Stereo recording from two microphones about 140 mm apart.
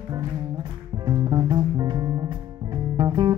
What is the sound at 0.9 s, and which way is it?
Music, 30° right (ahead or behind).